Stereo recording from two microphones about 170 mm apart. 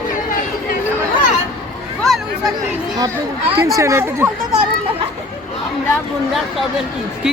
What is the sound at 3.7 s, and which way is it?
Speech, 20° right (ahead or behind).